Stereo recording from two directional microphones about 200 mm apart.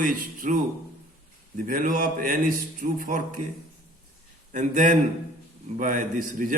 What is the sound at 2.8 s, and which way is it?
Speech, 40° right (ahead or behind).